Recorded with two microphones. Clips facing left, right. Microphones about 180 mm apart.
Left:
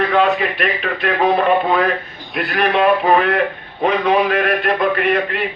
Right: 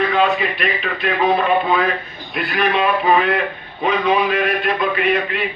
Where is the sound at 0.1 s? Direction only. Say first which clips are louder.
Left 2 dB; 60° left (ahead or behind).